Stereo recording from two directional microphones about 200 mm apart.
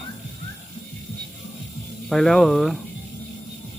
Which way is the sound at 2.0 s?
Centre (ahead or behind).